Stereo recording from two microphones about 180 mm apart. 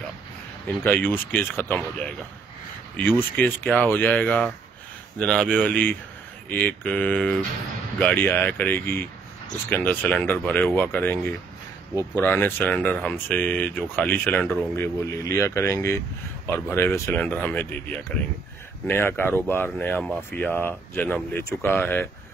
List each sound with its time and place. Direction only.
0.7 s speech: 10° left (ahead or behind)